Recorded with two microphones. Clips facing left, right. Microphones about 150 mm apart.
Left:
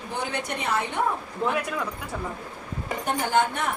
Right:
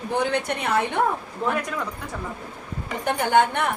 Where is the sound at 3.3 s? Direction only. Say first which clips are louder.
Right 5 dB; 65° right (ahead or behind).